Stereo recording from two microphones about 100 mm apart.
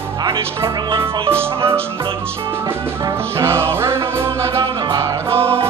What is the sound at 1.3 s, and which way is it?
Speech, 25° right (ahead or behind).